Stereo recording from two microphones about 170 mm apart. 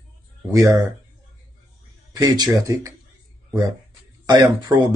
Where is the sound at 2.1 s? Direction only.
25° right (ahead or behind).